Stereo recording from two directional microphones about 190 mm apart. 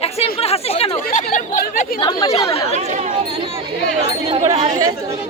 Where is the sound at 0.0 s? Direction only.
30° left (ahead or behind).